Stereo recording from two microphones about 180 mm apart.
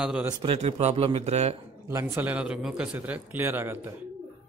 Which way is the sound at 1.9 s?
15° right (ahead or behind).